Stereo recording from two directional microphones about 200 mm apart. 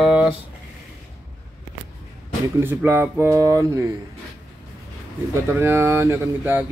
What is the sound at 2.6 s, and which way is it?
Speech, 10° right (ahead or behind).